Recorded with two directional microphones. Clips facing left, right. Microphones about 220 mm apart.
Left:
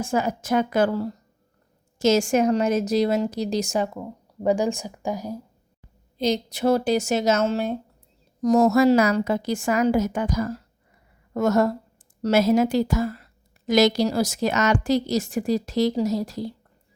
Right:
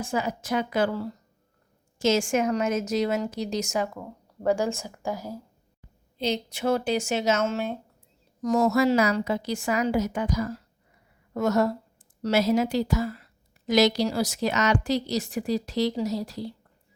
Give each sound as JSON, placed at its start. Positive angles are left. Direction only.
{"t": 0.0, "sound": "speech", "side_deg": 45}
{"t": 3.9, "sound": "speech", "side_deg": 15}
{"t": 6.1, "sound": "speech", "side_deg": 40}